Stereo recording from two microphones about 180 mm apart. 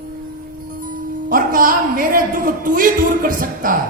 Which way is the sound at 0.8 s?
50° right (ahead or behind).